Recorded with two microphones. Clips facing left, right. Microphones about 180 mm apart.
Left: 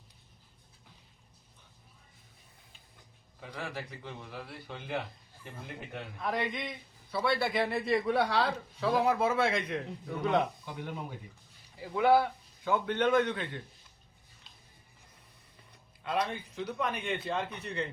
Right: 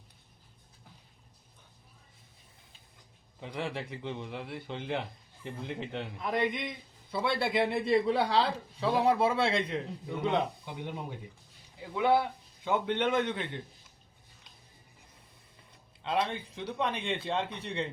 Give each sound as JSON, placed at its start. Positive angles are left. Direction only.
{"t": 3.4, "sound": "a man's voice", "side_deg": -25}
{"t": 11.9, "sound": "a man's voice", "side_deg": -20}
{"t": 16.0, "sound": "a man's voice", "side_deg": -25}